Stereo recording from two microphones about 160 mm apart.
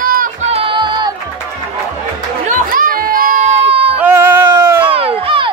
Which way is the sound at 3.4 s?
35° right (ahead or behind).